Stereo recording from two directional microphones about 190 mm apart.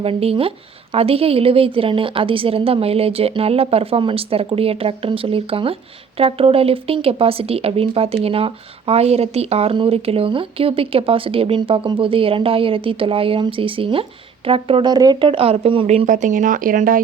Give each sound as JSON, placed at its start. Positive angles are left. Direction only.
{"t": 0.0, "sound": "speech", "side_deg": -30}